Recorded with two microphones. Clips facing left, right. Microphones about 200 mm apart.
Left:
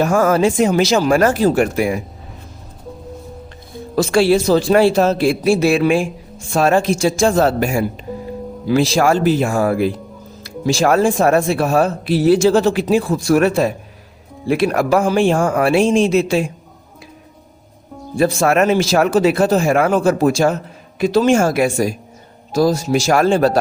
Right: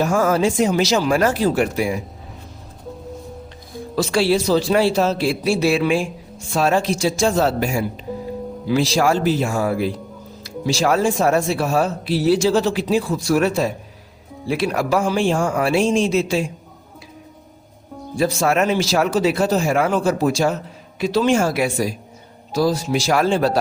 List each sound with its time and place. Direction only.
0.0 s speech: 55° left (ahead or behind)
3.9 s speech: 50° left (ahead or behind)
18.2 s speech: 55° left (ahead or behind)